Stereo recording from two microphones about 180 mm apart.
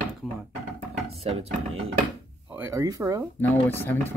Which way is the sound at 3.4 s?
10° left (ahead or behind).